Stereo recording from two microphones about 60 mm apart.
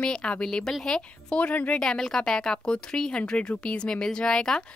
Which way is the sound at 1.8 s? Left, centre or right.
Centre.